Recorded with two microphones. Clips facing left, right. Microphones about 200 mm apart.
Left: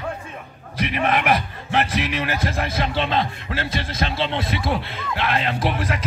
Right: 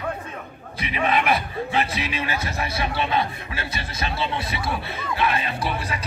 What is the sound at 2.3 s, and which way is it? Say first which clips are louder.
Speech: left 3 dB; 90° left.